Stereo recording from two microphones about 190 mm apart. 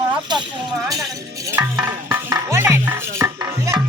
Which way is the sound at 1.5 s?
10° right (ahead or behind).